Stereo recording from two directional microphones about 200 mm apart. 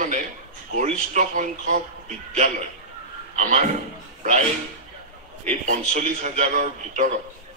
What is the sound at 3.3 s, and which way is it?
Speech, 40° right (ahead or behind).